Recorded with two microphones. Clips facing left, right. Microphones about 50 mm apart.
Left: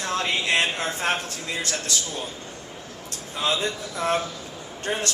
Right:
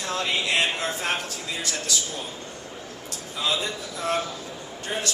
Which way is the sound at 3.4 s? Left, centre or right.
Left.